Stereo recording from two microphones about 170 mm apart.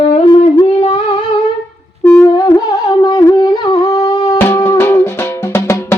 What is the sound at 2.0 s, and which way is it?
Music, 20° left (ahead or behind).